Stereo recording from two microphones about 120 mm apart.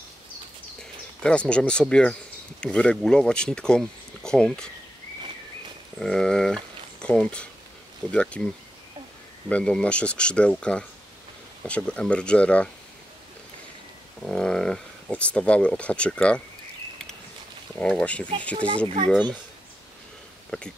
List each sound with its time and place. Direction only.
1.2 s speech: 10° left (ahead or behind)
5.9 s speech: 5° left (ahead or behind)
9.5 s speech: 10° left (ahead or behind)
14.2 s speech: 5° left (ahead or behind)
17.7 s speech: 10° left (ahead or behind)
20.5 s speech: 10° left (ahead or behind)